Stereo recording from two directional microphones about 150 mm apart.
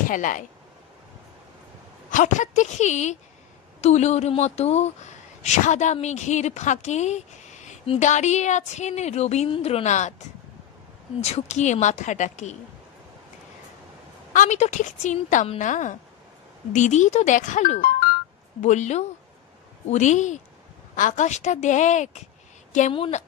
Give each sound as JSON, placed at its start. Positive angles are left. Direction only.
{"t": 0.1, "sound": "a woman's voice", "side_deg": 60}
{"t": 2.0, "sound": "speech", "side_deg": 60}
{"t": 11.1, "sound": "speech", "side_deg": 45}
{"t": 14.3, "sound": "a woman's voice", "side_deg": 55}